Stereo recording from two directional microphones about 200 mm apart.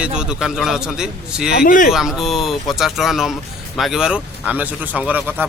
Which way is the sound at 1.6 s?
40° left (ahead or behind).